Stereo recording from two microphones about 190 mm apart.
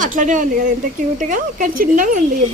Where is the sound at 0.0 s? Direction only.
40° right (ahead or behind).